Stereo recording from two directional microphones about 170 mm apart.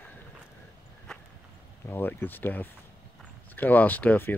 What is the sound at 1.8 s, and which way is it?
Speech, 10° left (ahead or behind).